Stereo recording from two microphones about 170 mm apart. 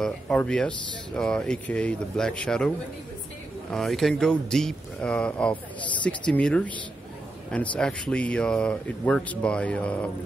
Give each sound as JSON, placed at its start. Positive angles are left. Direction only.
{"t": 0.0, "sound": "speech", "side_deg": 5}
{"t": 3.7, "sound": "speech", "side_deg": 0}
{"t": 7.7, "sound": "speech", "side_deg": 5}